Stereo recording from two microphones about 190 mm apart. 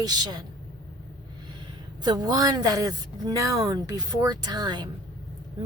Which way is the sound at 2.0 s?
20° right (ahead or behind).